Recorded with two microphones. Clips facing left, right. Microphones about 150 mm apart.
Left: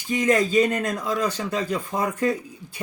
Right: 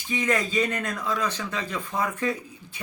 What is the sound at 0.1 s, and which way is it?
Speech, 40° left (ahead or behind).